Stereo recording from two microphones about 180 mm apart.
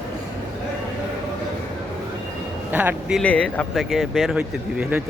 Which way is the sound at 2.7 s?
10° right (ahead or behind).